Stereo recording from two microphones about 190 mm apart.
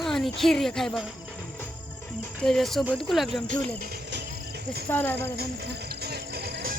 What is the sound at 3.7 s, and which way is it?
Music, 65° right (ahead or behind).